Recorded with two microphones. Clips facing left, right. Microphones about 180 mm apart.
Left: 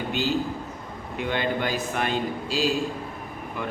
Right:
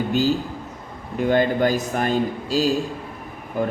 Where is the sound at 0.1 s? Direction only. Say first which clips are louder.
Right 2 dB; 40° right (ahead or behind).